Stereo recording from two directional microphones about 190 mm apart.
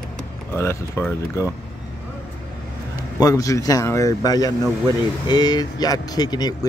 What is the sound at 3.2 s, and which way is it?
Speech, 15° left (ahead or behind).